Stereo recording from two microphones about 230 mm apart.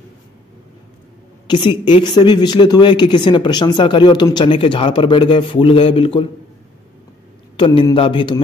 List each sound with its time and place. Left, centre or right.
1.5 s speech: centre
7.5 s speech: left